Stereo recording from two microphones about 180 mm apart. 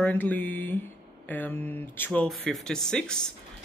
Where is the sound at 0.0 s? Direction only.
10° left (ahead or behind).